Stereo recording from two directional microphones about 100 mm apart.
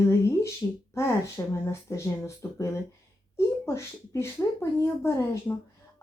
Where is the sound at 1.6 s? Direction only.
25° left (ahead or behind).